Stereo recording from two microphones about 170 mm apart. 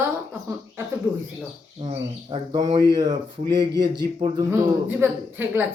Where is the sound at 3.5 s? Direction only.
80° right.